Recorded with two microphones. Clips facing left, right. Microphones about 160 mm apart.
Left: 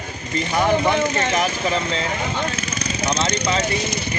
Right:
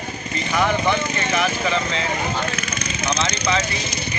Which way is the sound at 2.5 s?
35° left (ahead or behind).